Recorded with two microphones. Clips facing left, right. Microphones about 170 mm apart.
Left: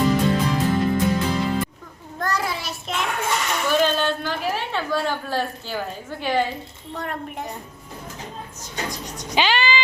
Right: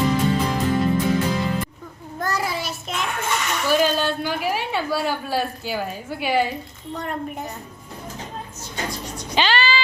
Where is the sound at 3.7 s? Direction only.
10° right (ahead or behind).